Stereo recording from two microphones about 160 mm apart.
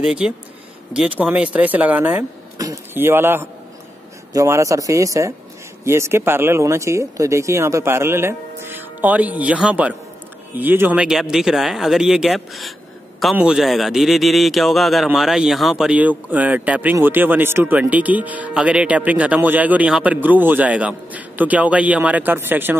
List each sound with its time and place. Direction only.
0.0 s a man's voice: 5° right (ahead or behind)